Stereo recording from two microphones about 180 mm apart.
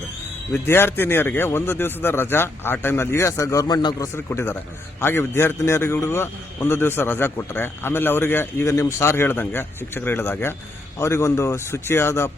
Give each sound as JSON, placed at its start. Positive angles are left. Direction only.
{"t": 0.5, "sound": "a man's voice", "side_deg": 10}